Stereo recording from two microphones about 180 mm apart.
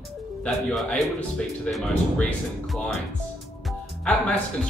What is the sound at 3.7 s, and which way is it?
Music, 5° left (ahead or behind).